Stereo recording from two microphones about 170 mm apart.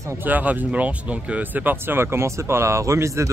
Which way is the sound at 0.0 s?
15° right (ahead or behind).